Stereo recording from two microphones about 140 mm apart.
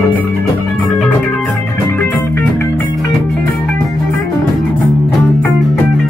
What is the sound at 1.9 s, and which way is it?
Music, 15° left (ahead or behind).